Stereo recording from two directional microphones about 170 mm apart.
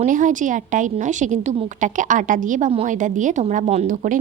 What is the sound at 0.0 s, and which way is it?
A woman's voice, 50° right (ahead or behind).